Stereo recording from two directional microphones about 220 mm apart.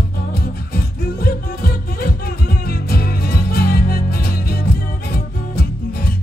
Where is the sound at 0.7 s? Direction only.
45° left (ahead or behind).